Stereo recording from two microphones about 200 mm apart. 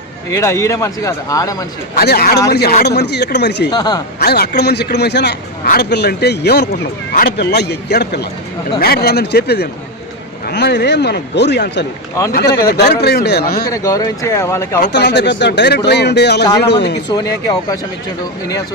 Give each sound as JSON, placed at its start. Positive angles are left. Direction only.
{"t": 0.3, "sound": "speech", "side_deg": 15}
{"t": 2.0, "sound": "a man's voice", "side_deg": 55}
{"t": 3.7, "sound": "speech", "side_deg": 20}
{"t": 4.2, "sound": "a man's voice", "side_deg": 50}
{"t": 13.7, "sound": "speech", "side_deg": 15}
{"t": 14.9, "sound": "a man's voice", "side_deg": 60}